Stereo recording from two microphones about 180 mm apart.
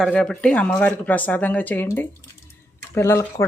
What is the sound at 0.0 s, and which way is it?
Speech, 5° left (ahead or behind).